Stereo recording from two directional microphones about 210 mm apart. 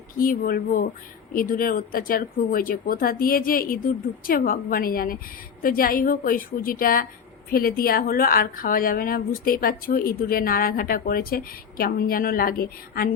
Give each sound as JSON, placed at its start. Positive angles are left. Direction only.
{"t": 0.2, "sound": "speech", "side_deg": 40}